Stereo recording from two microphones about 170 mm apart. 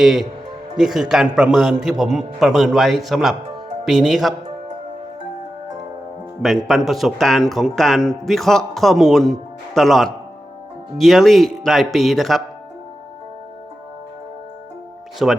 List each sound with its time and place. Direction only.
0.0 s a man's voice: centre (ahead or behind)
6.7 s a man's voice: centre (ahead or behind)
15.2 s a man's voice: 5° right (ahead or behind)